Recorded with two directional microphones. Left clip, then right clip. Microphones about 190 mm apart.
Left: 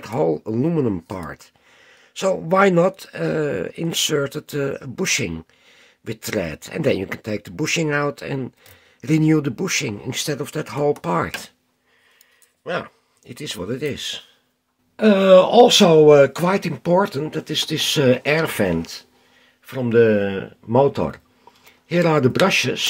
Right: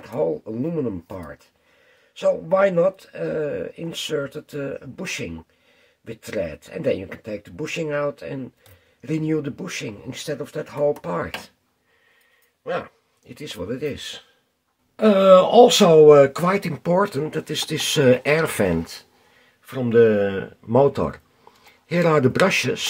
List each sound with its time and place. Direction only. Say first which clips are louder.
0.0 s speech: left 3 dB; 55° left (ahead or behind)
12.6 s speech: left 1 dB; 30° left (ahead or behind)
15.0 s speech: left 1 dB; 15° left (ahead or behind)